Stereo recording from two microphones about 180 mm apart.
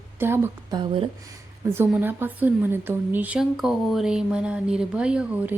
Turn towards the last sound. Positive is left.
turn(degrees=-5)  # may be behind; listen again after turning